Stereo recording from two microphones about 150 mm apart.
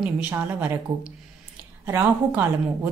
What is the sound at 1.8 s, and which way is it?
Speech, 15° right (ahead or behind).